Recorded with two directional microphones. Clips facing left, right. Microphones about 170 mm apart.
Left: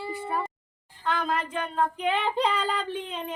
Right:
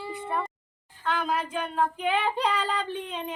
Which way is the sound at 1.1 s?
5° right (ahead or behind).